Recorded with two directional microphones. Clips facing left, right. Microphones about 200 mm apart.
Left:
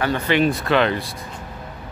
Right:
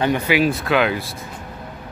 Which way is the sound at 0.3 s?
5° right (ahead or behind).